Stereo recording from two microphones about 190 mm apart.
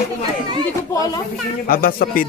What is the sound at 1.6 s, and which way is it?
Speech, 50° left (ahead or behind).